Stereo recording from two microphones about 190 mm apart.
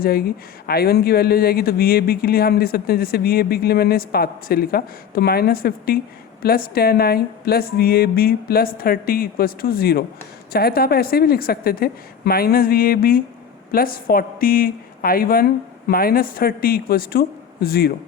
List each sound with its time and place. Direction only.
0.0 s speech: 55° left (ahead or behind)